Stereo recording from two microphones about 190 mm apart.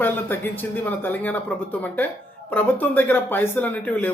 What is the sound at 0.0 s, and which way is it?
Speech, 10° left (ahead or behind).